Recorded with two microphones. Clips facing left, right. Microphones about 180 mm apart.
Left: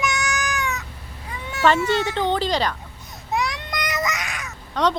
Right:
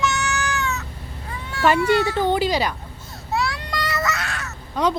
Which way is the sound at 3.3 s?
15° left (ahead or behind).